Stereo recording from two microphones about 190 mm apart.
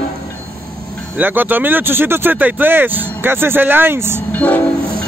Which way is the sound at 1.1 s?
10° right (ahead or behind).